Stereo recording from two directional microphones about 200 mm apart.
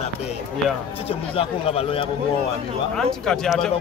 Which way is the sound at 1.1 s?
30° left (ahead or behind).